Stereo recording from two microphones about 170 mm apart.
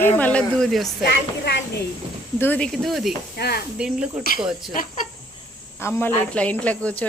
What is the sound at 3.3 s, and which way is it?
Speech, 65° left (ahead or behind).